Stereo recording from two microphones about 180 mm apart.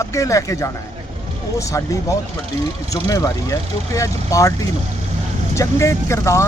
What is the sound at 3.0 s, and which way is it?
Speech, 20° left (ahead or behind).